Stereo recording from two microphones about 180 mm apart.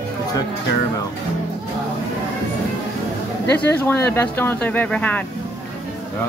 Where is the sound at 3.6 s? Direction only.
10° left (ahead or behind).